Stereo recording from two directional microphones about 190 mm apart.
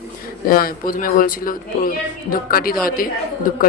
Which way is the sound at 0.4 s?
50° left (ahead or behind).